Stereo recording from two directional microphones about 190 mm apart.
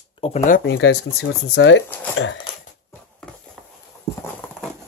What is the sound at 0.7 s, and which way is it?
Speech, 75° left (ahead or behind).